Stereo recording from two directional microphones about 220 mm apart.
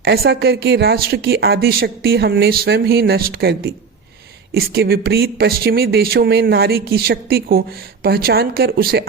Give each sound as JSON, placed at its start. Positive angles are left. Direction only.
{"t": 0.0, "sound": "speech", "side_deg": -50}